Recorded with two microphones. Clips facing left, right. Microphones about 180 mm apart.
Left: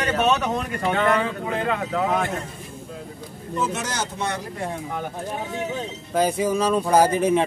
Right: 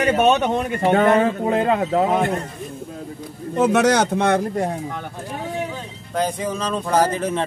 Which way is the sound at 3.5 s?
65° right (ahead or behind).